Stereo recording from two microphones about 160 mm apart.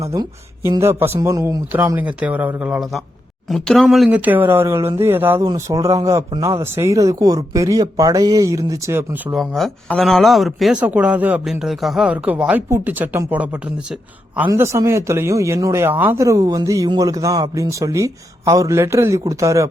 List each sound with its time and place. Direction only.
0.0 s speech: 20° right (ahead or behind)
9.3 s speech: centre (ahead or behind); by 19.6 s 20° right (ahead or behind)